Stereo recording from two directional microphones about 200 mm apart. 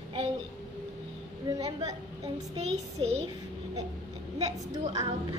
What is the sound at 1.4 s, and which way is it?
A woman's voice, 20° right (ahead or behind).